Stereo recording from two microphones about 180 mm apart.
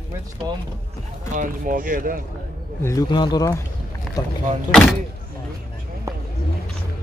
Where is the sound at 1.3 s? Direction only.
45° right (ahead or behind).